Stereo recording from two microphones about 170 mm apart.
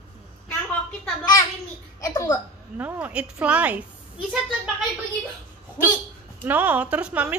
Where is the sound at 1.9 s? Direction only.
20° left (ahead or behind).